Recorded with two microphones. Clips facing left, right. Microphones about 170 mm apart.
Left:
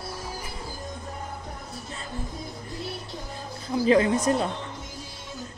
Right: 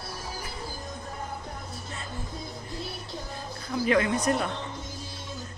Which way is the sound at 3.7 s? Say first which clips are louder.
Left 4 dB; 30° left (ahead or behind).